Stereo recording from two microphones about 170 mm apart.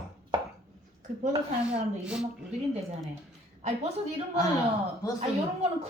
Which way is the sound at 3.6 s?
40° right (ahead or behind).